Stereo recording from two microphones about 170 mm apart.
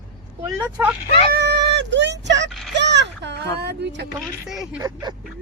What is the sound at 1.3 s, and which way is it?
Speech, 75° right (ahead or behind).